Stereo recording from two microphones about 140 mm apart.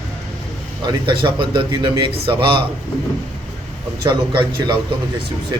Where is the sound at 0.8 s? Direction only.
35° right (ahead or behind).